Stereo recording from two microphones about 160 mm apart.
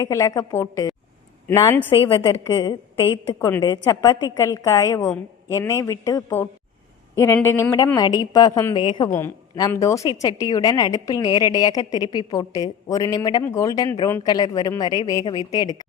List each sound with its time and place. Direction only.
0.0 s a woman's voice: 20° left (ahead or behind)
1.9 s a woman's voice: 30° left (ahead or behind)
3.3 s a woman's voice: 15° left (ahead or behind); by 9.0 s 30° left (ahead or behind)
9.0 s a woman's voice: 15° left (ahead or behind)